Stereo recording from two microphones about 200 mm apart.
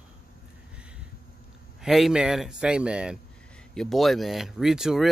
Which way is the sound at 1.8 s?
Centre (ahead or behind).